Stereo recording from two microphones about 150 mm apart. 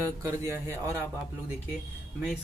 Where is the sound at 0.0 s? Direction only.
20° right (ahead or behind).